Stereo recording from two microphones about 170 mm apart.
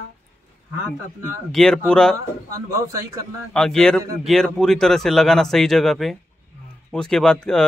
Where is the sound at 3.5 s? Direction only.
5° left (ahead or behind).